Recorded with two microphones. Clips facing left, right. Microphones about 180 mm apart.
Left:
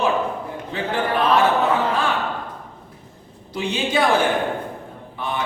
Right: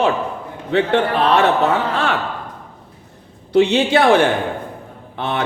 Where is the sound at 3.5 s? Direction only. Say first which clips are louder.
Right 10 dB; 75° right (ahead or behind).